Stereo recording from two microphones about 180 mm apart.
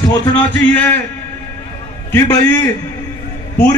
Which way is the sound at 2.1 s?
15° left (ahead or behind).